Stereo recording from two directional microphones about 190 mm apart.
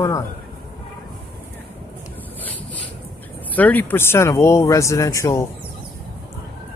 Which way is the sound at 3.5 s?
10° left (ahead or behind).